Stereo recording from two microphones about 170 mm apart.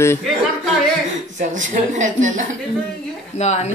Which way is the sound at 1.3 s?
45° right (ahead or behind).